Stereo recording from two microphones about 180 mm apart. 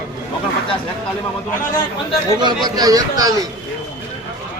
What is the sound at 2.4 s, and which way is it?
A man's voice, 25° right (ahead or behind).